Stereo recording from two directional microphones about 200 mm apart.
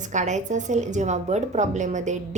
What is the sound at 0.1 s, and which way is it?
A woman's voice, 35° right (ahead or behind).